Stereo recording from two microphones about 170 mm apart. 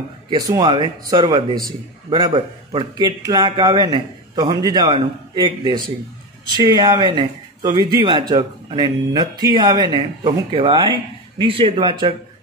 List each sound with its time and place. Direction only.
0.3 s speech: 20° right (ahead or behind)